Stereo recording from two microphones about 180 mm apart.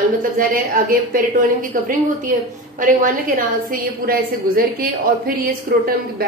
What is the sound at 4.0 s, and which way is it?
A woman's voice, 55° right (ahead or behind).